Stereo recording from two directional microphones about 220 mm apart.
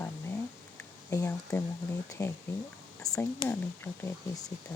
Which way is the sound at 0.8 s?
5° left (ahead or behind).